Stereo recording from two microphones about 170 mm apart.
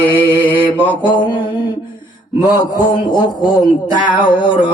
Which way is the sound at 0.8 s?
10° left (ahead or behind).